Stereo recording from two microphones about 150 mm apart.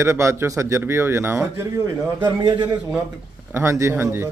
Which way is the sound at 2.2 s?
30° right (ahead or behind).